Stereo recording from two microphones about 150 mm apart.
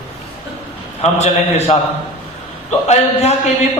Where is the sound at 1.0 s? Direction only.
45° left (ahead or behind).